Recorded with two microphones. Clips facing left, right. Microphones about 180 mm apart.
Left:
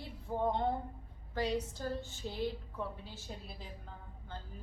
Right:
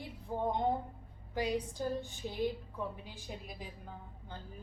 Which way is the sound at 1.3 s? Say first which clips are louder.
Even; 15° right (ahead or behind).